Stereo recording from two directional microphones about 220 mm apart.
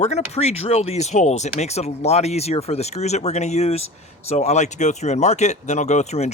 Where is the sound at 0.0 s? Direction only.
30° left (ahead or behind).